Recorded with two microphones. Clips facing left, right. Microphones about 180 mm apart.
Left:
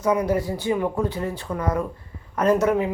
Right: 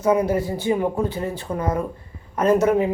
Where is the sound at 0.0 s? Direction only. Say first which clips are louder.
Right 2 dB; 25° right (ahead or behind).